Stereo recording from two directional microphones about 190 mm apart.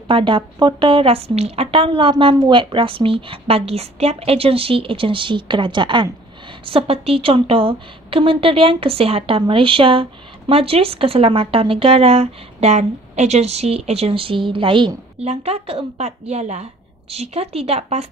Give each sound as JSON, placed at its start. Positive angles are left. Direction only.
{"t": 0.1, "sound": "a woman's voice", "side_deg": -25}